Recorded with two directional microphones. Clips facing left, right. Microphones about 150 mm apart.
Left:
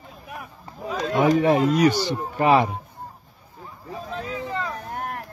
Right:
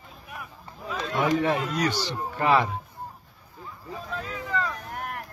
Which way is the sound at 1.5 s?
40° left (ahead or behind).